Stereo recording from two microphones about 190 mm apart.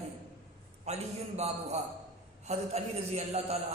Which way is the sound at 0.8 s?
35° right (ahead or behind).